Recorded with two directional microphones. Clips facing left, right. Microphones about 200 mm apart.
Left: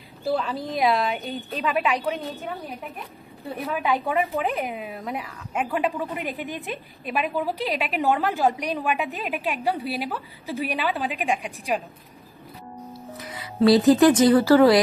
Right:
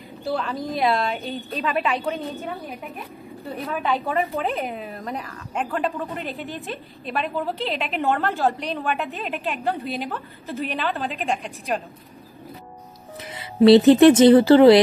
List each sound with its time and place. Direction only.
0.2 s a woman's voice: centre (ahead or behind)
3.5 s speech: 10° left (ahead or behind)
13.2 s music: 25° right (ahead or behind)
13.7 s speech: 25° right (ahead or behind)